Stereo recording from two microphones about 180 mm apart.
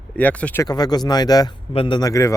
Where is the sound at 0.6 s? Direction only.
20° left (ahead or behind).